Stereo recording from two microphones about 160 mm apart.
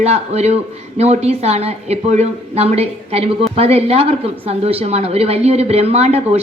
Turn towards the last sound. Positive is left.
turn(degrees=-40)  # may be behind; listen again after turning